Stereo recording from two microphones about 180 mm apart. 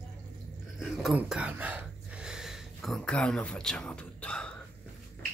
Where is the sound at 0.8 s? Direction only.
Centre (ahead or behind).